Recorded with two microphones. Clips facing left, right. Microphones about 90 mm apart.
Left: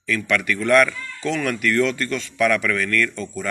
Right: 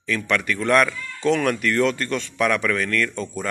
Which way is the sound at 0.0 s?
30° right (ahead or behind).